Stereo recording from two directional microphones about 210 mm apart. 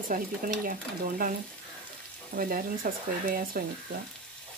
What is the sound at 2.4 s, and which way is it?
Speech, 40° right (ahead or behind).